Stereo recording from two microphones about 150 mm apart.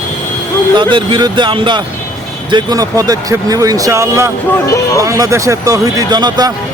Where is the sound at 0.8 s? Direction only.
30° right (ahead or behind).